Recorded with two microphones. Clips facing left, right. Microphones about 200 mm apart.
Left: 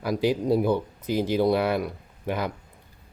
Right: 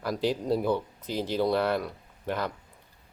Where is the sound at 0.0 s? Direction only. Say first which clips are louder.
Left 4 dB; centre (ahead or behind).